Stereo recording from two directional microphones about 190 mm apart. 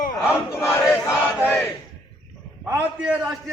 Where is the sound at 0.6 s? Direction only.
10° left (ahead or behind).